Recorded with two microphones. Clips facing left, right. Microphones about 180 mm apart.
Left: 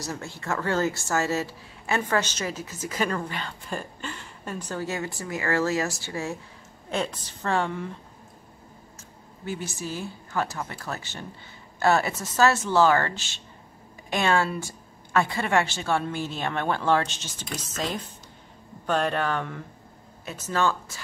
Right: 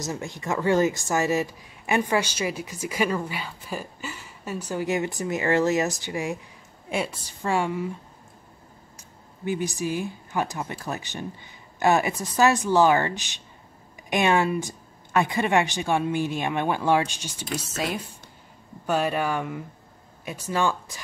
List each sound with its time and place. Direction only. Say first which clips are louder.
0.0 s speech: right 3 dB; 15° right (ahead or behind)
8.9 s speech: left 2 dB; 15° right (ahead or behind)